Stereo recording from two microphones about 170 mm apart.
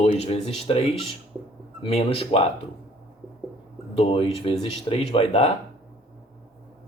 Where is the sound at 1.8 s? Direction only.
35° left (ahead or behind).